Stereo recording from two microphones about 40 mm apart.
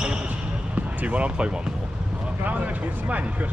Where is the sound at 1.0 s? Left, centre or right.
Right.